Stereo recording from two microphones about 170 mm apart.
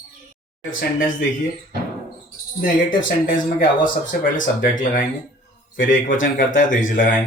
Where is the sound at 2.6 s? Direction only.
55° left (ahead or behind).